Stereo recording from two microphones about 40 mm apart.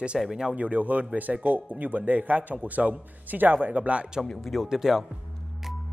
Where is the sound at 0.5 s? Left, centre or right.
Right.